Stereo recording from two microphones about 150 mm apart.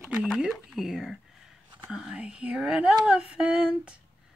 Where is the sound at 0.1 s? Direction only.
5° right (ahead or behind).